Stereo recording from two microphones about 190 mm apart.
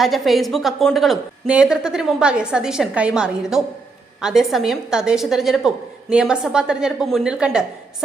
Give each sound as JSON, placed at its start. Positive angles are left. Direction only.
{"t": 0.0, "sound": "a woman's voice", "side_deg": 0}